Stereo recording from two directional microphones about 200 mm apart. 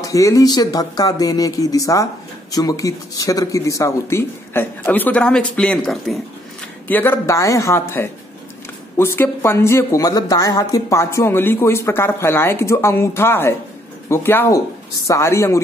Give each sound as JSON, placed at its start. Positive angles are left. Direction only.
{"t": 0.0, "sound": "speech", "side_deg": 15}